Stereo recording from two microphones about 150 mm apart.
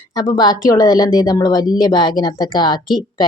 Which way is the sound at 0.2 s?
25° left (ahead or behind).